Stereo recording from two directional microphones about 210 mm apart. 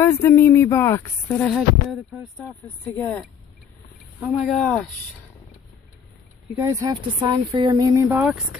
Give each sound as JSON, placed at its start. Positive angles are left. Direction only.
{"t": 0.0, "sound": "speech", "side_deg": 15}
{"t": 1.5, "sound": "speech", "side_deg": 0}
{"t": 4.2, "sound": "speech", "side_deg": 0}
{"t": 6.5, "sound": "speech", "side_deg": -15}